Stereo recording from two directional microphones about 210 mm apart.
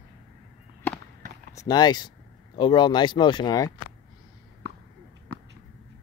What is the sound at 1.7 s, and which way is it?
Speech, 20° left (ahead or behind).